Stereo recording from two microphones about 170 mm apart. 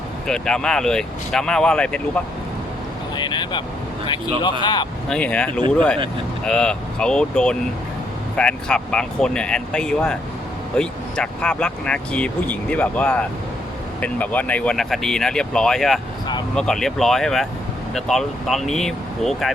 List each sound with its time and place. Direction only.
0.3 s speech: 5° left (ahead or behind)
3.2 s vehicle: 25° left (ahead or behind)
4.6 s speech: 25° left (ahead or behind)
5.0 s speech: 5° left (ahead or behind)